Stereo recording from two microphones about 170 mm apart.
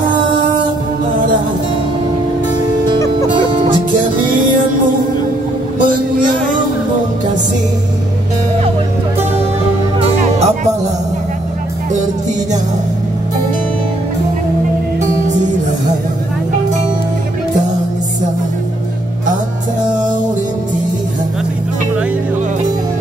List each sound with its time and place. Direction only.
3.3 s music: 30° right (ahead or behind)
9.9 s music: 35° right (ahead or behind)